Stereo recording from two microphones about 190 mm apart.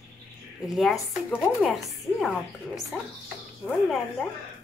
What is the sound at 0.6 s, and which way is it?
Speech, centre (ahead or behind).